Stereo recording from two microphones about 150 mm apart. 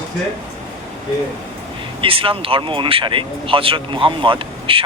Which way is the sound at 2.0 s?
35° right (ahead or behind).